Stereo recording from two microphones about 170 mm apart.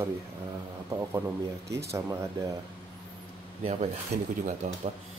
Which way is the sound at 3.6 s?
40° right (ahead or behind).